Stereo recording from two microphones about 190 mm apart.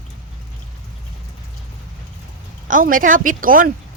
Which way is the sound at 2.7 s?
45° right (ahead or behind).